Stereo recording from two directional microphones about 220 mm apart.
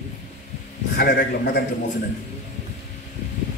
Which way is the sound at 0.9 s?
45° left (ahead or behind).